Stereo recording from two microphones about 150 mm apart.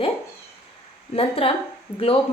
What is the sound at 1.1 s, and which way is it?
Speech, 40° left (ahead or behind).